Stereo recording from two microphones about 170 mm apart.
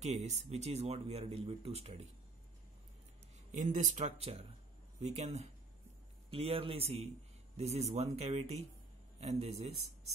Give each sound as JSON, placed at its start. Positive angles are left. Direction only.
{"t": 0.0, "sound": "speech", "side_deg": -40}
{"t": 3.5, "sound": "speech", "side_deg": -45}